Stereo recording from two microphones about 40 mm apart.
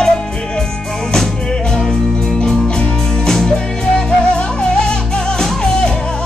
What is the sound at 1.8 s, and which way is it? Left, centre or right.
Music, centre.